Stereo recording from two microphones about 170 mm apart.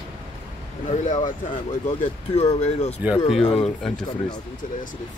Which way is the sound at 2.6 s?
40° left (ahead or behind).